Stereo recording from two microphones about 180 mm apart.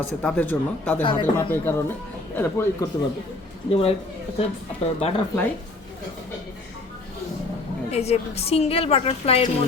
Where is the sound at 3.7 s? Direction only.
35° left (ahead or behind).